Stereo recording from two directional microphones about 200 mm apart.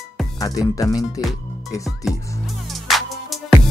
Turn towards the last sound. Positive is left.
turn(degrees=0)  # may be behind; listen again after turning